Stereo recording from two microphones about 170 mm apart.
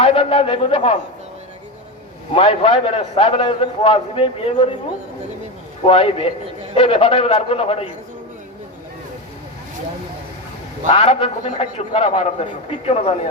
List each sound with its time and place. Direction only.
0.0 s a man's voice: 35° left (ahead or behind)
2.3 s a man's voice: 35° left (ahead or behind)
5.8 s a man's voice: 35° left (ahead or behind)
10.9 s a man's voice: 35° left (ahead or behind)